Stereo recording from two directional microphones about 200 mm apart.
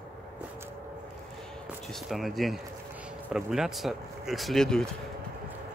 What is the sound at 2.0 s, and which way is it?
Speech, centre (ahead or behind).